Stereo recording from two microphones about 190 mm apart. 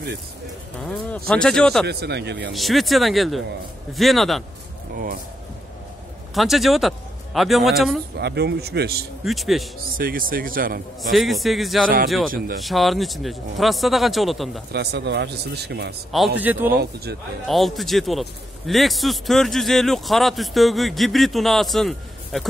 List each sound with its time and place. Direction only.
0.8 s a man's voice: 5° left (ahead or behind)
1.9 s speech: 60° right (ahead or behind)
2.5 s a man's voice: centre (ahead or behind)
4.9 s speech: 45° right (ahead or behind)
6.3 s a man's voice: centre (ahead or behind)
8.2 s speech: 60° right (ahead or behind)
9.2 s a man's voice: centre (ahead or behind)
9.9 s speech: 50° right (ahead or behind)
11.0 s a man's voice: centre (ahead or behind)
14.7 s speech: 60° right (ahead or behind)
16.3 s speech: 10° right (ahead or behind)
16.7 s speech: 55° right (ahead or behind)
17.5 s a man's voice: centre (ahead or behind)